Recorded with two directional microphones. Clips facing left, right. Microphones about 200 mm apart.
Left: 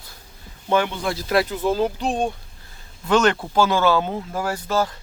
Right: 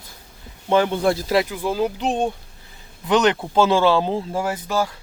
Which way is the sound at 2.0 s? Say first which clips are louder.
Right 1 dB; 20° right (ahead or behind).